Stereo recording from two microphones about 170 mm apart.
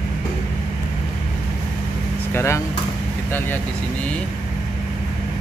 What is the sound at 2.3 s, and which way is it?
Speech, 15° left (ahead or behind).